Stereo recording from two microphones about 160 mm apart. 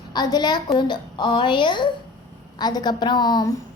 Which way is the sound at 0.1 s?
25° left (ahead or behind).